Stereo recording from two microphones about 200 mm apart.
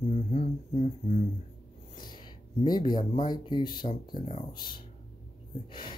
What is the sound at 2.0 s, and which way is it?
Speech, 20° left (ahead or behind).